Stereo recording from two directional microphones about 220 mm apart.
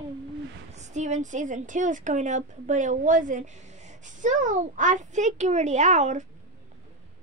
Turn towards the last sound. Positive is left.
turn(degrees=-30)  # may be behind; listen again after turning